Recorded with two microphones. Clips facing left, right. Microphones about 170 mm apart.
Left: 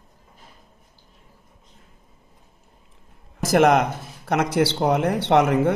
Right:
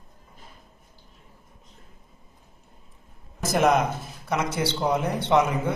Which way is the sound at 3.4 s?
75° left (ahead or behind).